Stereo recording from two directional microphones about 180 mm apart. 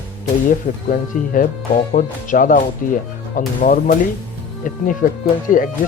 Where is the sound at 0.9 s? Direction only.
50° left (ahead or behind).